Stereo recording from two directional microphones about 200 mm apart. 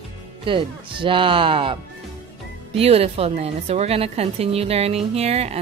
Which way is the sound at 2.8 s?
30° right (ahead or behind).